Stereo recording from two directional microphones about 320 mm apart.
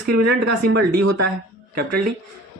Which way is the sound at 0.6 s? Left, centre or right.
Right.